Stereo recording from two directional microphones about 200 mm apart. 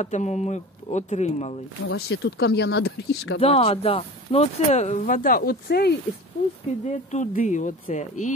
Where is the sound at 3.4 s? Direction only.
30° left (ahead or behind); by 6.0 s 50° left (ahead or behind).